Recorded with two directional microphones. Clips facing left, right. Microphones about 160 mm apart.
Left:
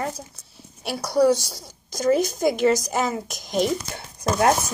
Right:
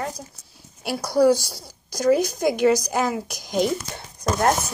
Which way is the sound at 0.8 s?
Centre (ahead or behind).